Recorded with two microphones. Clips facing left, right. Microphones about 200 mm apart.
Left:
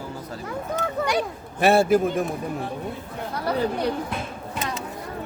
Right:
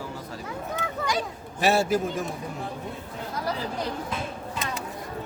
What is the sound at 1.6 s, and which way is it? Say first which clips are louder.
Speech: left 5 dB; 55° left (ahead or behind).